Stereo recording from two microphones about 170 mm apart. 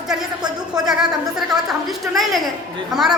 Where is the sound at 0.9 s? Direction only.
5° right (ahead or behind).